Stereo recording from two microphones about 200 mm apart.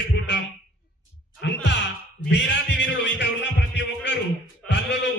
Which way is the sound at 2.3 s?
60° left (ahead or behind).